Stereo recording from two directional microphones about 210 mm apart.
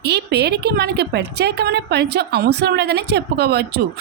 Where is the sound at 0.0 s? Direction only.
50° right (ahead or behind).